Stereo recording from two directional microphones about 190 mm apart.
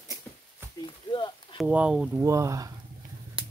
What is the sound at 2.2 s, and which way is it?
Speech, 15° right (ahead or behind).